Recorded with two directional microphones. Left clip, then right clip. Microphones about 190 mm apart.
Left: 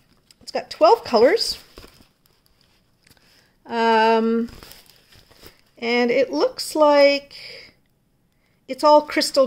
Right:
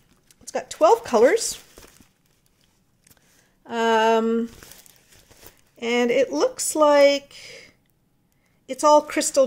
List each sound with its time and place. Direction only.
0.4 s speech: centre (ahead or behind)
3.6 s speech: 5° left (ahead or behind)
5.8 s speech: centre (ahead or behind)